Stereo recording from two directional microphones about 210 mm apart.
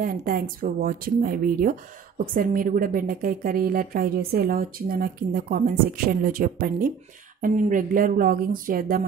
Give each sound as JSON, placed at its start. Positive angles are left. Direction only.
{"t": 0.0, "sound": "a woman's voice", "side_deg": -45}
{"t": 7.4, "sound": "music", "side_deg": -40}